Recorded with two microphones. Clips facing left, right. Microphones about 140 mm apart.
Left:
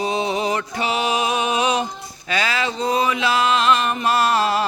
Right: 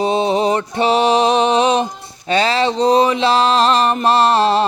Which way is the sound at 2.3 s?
30° right (ahead or behind).